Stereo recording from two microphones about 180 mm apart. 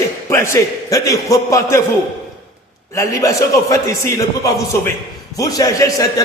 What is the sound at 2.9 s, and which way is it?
A man's voice, 15° left (ahead or behind).